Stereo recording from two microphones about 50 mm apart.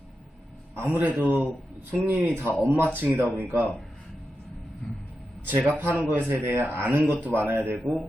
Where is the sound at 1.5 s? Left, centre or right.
Centre.